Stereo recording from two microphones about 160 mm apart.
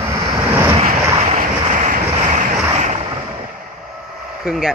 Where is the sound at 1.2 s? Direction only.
50° right (ahead or behind).